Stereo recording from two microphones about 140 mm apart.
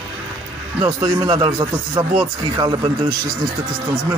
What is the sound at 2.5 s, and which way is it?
Speech, 30° right (ahead or behind).